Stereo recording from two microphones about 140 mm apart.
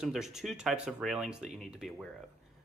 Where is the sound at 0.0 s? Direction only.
5° right (ahead or behind).